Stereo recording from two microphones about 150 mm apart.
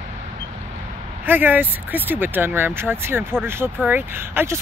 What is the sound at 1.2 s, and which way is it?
Speech, 15° right (ahead or behind).